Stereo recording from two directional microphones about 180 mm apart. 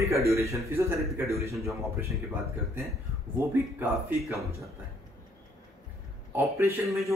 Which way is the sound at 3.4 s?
10° right (ahead or behind).